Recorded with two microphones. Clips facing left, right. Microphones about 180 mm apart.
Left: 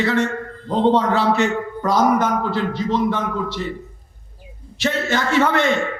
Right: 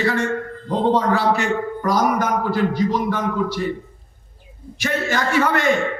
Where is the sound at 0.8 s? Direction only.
20° left (ahead or behind).